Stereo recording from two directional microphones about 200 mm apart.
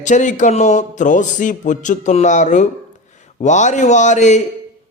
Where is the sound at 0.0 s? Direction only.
40° left (ahead or behind).